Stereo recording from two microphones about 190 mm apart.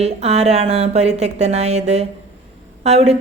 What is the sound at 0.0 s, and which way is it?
Speech, 35° right (ahead or behind).